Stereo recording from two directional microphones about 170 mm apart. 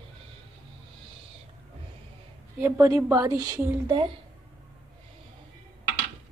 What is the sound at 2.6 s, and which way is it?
A woman's voice, 20° right (ahead or behind).